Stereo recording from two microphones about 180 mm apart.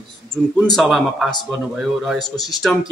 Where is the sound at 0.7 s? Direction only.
Centre (ahead or behind).